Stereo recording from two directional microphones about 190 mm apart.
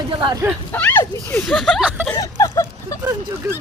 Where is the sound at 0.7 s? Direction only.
10° left (ahead or behind); by 2.0 s 5° right (ahead or behind).